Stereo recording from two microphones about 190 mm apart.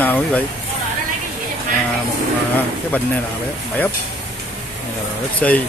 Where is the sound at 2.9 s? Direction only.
10° left (ahead or behind).